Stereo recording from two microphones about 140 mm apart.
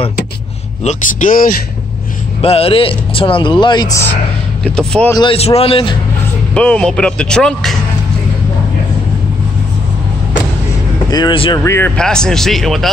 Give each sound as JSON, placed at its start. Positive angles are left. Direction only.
{"t": 0.8, "sound": "speech", "side_deg": 70}
{"t": 2.4, "sound": "speech", "side_deg": 45}
{"t": 4.6, "sound": "speech", "side_deg": 5}
{"t": 5.3, "sound": "a man's voice", "side_deg": 45}
{"t": 6.5, "sound": "speech", "side_deg": 10}
{"t": 11.1, "sound": "speech", "side_deg": 30}
{"t": 11.6, "sound": "speech", "side_deg": 20}
{"t": 12.0, "sound": "speech", "side_deg": 5}